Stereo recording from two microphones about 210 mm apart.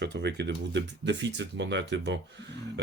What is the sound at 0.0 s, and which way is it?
Speech, 55° right (ahead or behind).